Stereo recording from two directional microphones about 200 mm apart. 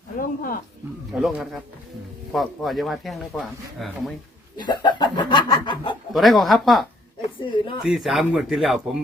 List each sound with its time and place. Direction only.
0.2 s speech: 45° left (ahead or behind)
1.1 s speech: centre (ahead or behind)
4.5 s speech: 20° left (ahead or behind)
6.1 s speech: centre (ahead or behind)
7.3 s speech: 25° left (ahead or behind)
7.9 s speech: centre (ahead or behind)